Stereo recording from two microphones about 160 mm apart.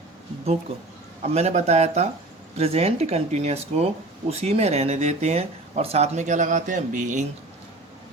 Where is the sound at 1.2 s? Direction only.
40° right (ahead or behind).